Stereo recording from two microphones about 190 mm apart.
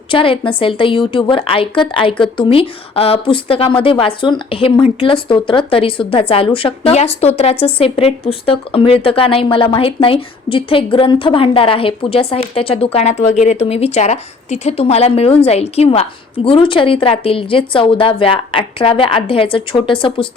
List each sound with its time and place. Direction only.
0.1 s speech: 30° left (ahead or behind)